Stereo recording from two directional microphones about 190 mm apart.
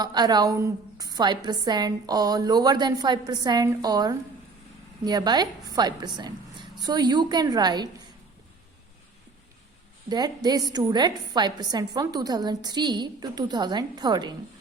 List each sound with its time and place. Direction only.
0.0 s a woman's voice: 20° right (ahead or behind)
10.1 s a woman's voice: 20° right (ahead or behind)